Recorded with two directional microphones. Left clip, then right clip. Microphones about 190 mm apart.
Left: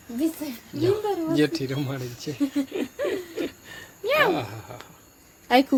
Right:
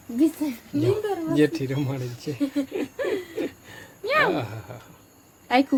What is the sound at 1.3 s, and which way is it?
Speech, 5° right (ahead or behind).